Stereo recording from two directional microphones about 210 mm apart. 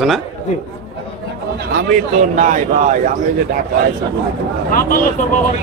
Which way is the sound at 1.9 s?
40° right (ahead or behind).